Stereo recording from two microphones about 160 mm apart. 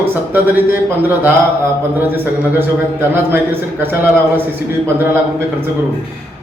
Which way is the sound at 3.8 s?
15° right (ahead or behind).